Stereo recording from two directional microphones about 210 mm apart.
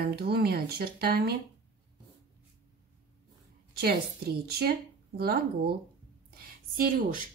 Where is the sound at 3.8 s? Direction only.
50° right (ahead or behind).